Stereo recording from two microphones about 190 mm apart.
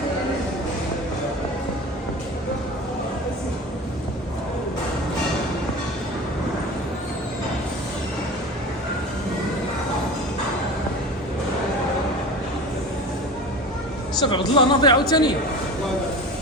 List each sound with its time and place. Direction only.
14.2 s a woman's voice: 25° left (ahead or behind)